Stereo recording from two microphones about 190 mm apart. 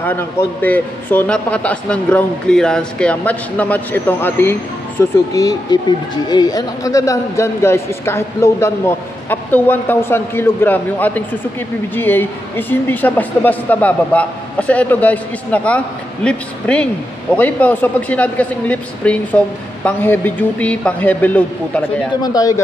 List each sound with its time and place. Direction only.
0.0 s a woman's voice: 10° left (ahead or behind)
22.2 s a man's voice: 20° left (ahead or behind)